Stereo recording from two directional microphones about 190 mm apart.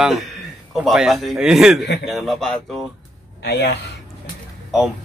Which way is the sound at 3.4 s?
65° left (ahead or behind).